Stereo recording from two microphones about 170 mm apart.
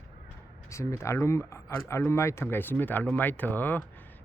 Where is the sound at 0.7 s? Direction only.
15° left (ahead or behind).